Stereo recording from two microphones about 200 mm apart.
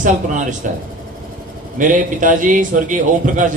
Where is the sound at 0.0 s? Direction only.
40° right (ahead or behind).